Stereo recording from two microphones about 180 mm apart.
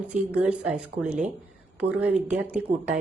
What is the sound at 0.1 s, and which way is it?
Speech, 5° right (ahead or behind).